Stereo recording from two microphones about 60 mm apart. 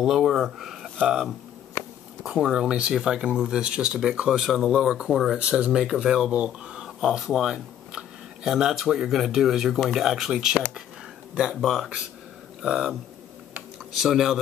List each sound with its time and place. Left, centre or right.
0.0 s speech: centre
6.8 s speech: centre
11.6 s speech: centre
14.0 s speech: centre